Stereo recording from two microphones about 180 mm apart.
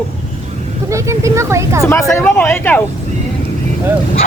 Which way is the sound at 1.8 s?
15° left (ahead or behind).